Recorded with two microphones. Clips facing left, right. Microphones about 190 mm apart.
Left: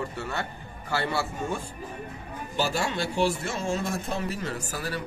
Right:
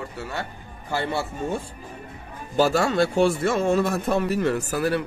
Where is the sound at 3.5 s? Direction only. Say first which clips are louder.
Right 8 dB; 60° right (ahead or behind).